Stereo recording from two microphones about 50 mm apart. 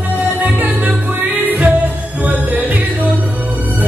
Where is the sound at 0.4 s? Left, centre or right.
Right.